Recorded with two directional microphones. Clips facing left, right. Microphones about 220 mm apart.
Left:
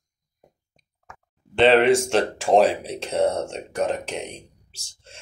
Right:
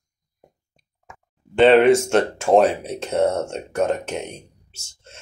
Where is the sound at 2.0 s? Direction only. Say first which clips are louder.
Right 3 dB; centre (ahead or behind).